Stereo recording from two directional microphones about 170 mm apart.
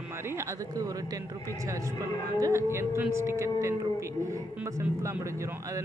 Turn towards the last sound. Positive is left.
turn(degrees=-15)  # may be behind; listen again after turning